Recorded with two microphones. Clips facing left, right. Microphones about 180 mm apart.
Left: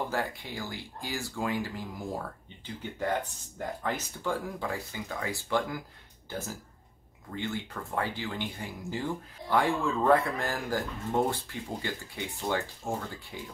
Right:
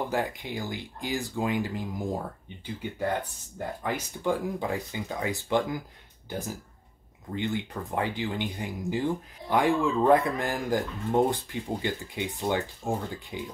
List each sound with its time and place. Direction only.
0.1 s speech: 20° right (ahead or behind)